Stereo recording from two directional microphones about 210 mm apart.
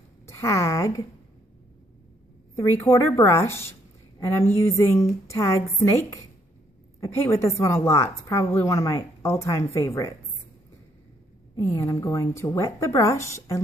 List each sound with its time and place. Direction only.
0.3 s speech: 15° left (ahead or behind)
2.5 s speech: 10° left (ahead or behind)
11.5 s speech: 15° left (ahead or behind)